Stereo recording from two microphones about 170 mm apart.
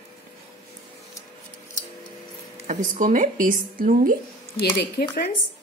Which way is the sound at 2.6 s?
45° right (ahead or behind).